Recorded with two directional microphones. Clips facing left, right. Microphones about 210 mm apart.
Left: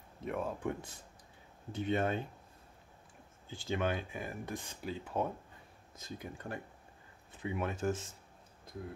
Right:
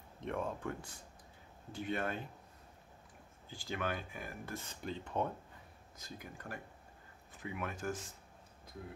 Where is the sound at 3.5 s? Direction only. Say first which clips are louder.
Left 5 dB; 20° left (ahead or behind).